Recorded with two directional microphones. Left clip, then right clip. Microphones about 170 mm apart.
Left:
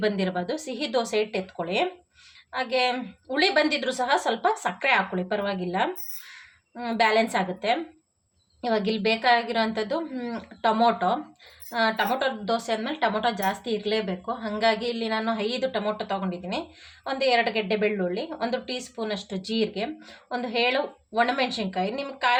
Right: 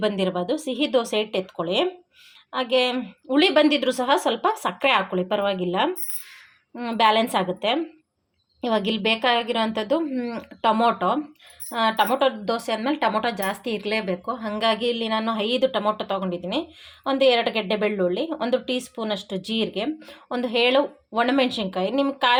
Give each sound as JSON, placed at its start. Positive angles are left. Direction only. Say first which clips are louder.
{"t": 0.0, "sound": "a woman's voice", "louder": "right 3 dB", "side_deg": -30}